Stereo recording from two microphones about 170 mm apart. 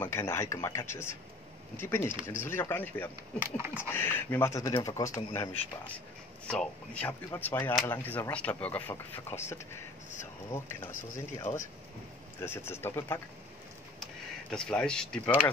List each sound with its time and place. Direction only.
0.0 s speech: 15° left (ahead or behind)
3.5 s speech: 15° right (ahead or behind)
3.9 s speech: 10° left (ahead or behind)
6.5 s speech: 5° left (ahead or behind)
11.1 s speech: 20° left (ahead or behind)
14.5 s speech: 5° left (ahead or behind)